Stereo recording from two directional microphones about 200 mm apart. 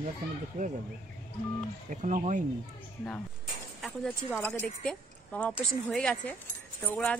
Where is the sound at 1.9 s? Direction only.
40° right (ahead or behind).